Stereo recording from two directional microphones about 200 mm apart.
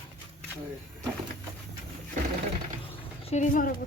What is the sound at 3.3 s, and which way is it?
Speech, 40° left (ahead or behind).